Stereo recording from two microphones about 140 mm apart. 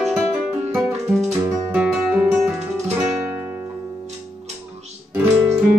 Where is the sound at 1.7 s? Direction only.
10° right (ahead or behind).